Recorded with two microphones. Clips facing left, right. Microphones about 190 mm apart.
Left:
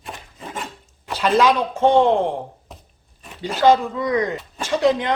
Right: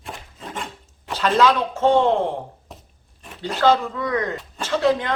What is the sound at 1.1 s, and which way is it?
Speech, 10° left (ahead or behind).